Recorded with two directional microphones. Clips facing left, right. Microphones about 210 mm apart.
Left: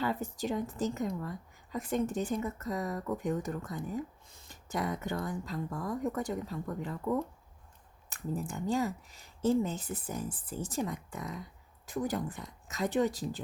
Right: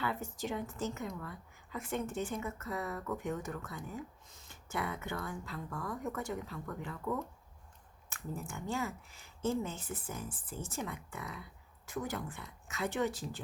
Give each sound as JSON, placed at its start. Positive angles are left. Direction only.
{"t": 0.0, "sound": "speech", "side_deg": 35}
{"t": 8.1, "sound": "speech", "side_deg": 35}